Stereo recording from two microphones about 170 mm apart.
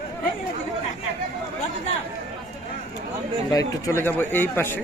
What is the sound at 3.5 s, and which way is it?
A man's voice, 15° left (ahead or behind).